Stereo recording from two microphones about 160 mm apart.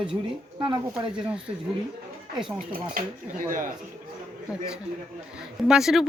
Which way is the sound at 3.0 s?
60° right (ahead or behind).